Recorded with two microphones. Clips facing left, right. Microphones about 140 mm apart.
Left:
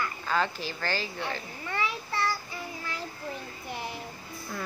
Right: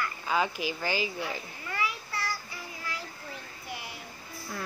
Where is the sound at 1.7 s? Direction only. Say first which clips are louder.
Left 3 dB; 25° left (ahead or behind).